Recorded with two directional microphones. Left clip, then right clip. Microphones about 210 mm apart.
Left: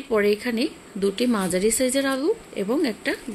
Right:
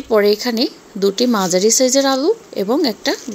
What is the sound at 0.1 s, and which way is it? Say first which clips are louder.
A woman's voice: right 7 dB; 15° right (ahead or behind).